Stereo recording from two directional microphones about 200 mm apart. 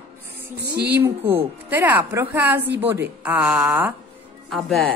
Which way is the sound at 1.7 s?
10° right (ahead or behind).